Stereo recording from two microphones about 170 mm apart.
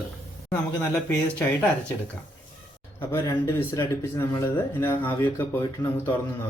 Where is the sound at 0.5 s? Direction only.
10° left (ahead or behind).